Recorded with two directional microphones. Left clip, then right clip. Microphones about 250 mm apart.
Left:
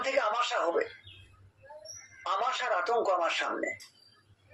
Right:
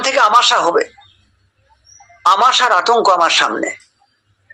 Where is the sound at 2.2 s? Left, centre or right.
Right.